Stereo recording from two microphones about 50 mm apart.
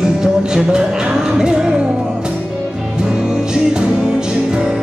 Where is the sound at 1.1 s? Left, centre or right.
Centre.